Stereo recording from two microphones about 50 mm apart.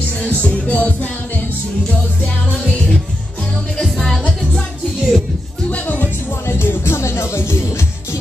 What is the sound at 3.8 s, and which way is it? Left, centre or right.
Music, centre.